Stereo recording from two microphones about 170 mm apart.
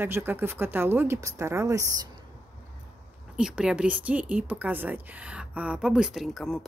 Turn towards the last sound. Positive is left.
turn(degrees=0)  # may be behind; listen again after turning